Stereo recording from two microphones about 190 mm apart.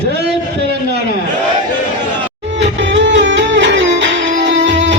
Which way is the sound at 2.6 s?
70° right (ahead or behind).